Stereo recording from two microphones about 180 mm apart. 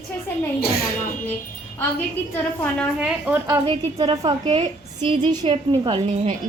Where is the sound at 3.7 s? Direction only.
25° right (ahead or behind).